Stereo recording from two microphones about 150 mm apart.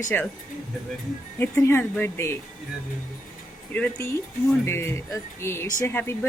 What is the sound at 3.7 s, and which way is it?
Speech, 10° left (ahead or behind).